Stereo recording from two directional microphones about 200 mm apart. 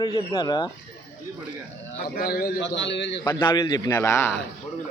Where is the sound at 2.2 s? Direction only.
50° left (ahead or behind).